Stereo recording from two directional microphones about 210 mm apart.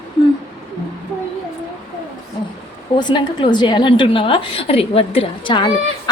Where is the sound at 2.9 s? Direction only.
20° left (ahead or behind).